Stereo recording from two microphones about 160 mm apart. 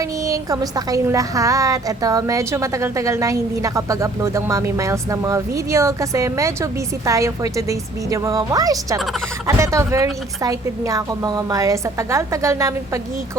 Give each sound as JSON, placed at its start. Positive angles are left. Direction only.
{"t": 0.3, "sound": "a woman's voice", "side_deg": -20}